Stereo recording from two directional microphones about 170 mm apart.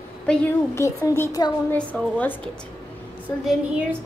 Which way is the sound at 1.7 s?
10° left (ahead or behind).